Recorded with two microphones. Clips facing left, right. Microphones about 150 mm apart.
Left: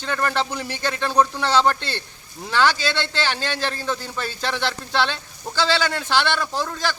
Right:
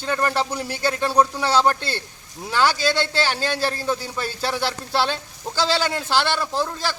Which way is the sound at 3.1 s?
40° right (ahead or behind).